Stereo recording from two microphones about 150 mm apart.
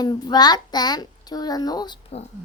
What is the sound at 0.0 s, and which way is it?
A child's voice, 30° left (ahead or behind).